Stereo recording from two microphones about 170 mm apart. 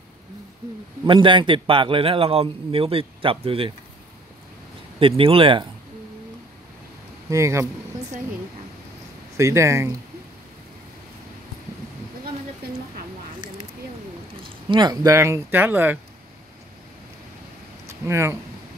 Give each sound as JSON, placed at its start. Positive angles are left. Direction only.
{"t": 1.0, "sound": "a man's voice", "side_deg": -30}
{"t": 5.0, "sound": "a man's voice", "side_deg": -30}
{"t": 7.2, "sound": "speech", "side_deg": -15}
{"t": 9.4, "sound": "speech", "side_deg": -15}
{"t": 14.7, "sound": "speech", "side_deg": -25}
{"t": 18.0, "sound": "speech", "side_deg": -15}